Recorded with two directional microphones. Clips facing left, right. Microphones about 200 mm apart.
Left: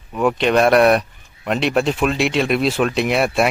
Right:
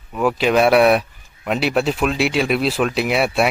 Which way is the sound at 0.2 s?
5° right (ahead or behind).